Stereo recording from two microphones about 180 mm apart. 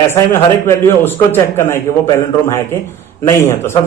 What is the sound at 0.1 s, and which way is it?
A man's voice, 15° left (ahead or behind).